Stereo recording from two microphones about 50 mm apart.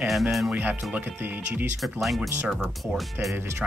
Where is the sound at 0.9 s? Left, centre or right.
Right.